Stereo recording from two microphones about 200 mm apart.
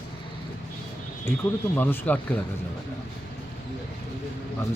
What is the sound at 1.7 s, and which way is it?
Speech, 10° left (ahead or behind).